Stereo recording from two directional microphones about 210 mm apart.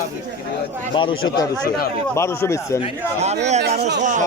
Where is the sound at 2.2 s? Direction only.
15° left (ahead or behind).